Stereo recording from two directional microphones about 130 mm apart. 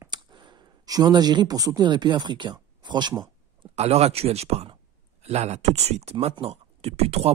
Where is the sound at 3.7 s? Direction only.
55° right (ahead or behind).